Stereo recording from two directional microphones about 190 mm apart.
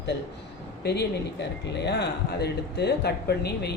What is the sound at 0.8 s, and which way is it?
Speech, 60° left (ahead or behind).